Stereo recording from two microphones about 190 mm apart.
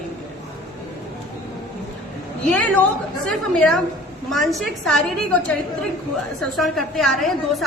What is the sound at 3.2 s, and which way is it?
A woman's voice, 5° left (ahead or behind).